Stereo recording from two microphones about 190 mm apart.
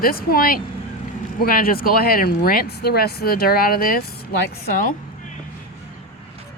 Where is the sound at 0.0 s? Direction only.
50° left (ahead or behind).